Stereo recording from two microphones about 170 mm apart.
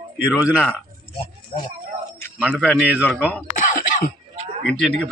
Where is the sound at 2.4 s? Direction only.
5° right (ahead or behind).